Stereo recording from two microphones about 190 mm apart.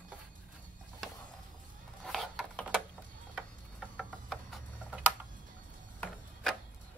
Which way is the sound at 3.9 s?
5° left (ahead or behind).